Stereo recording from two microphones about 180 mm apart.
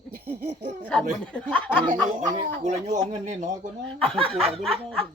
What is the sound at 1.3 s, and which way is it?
Speech, 5° left (ahead or behind).